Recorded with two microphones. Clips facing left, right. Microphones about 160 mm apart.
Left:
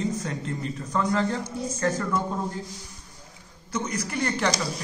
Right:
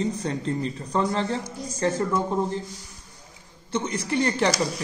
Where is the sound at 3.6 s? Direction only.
30° right (ahead or behind).